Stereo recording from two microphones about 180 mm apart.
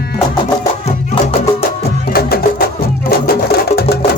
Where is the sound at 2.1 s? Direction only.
55° left (ahead or behind).